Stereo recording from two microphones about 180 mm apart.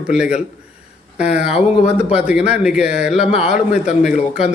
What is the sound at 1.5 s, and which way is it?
Speech, 35° left (ahead or behind).